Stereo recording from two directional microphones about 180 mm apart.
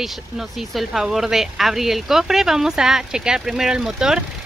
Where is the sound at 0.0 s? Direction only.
Centre (ahead or behind).